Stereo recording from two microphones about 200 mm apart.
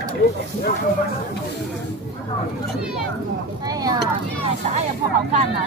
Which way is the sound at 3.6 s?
20° right (ahead or behind).